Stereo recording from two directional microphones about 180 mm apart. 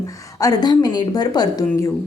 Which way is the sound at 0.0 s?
20° left (ahead or behind).